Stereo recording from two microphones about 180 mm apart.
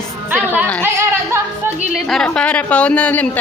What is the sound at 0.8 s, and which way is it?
Speech, 15° right (ahead or behind).